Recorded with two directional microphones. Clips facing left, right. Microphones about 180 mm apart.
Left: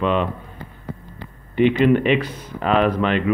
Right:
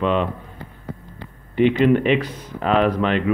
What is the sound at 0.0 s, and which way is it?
Speech, 35° right (ahead or behind).